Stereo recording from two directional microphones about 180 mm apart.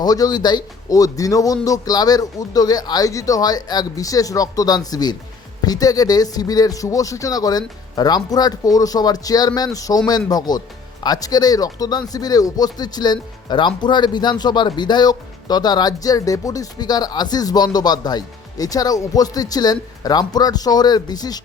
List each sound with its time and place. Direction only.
0.0 s speech: 20° left (ahead or behind)